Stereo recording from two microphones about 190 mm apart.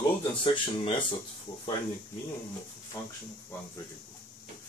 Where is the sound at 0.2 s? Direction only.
25° left (ahead or behind).